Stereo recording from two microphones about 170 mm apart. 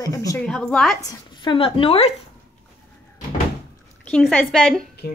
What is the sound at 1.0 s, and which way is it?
Speech, 25° left (ahead or behind).